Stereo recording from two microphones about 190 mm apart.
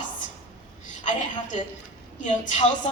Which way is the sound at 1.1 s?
40° left (ahead or behind).